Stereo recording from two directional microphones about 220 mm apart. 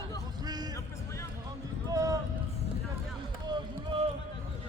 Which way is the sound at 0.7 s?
10° left (ahead or behind).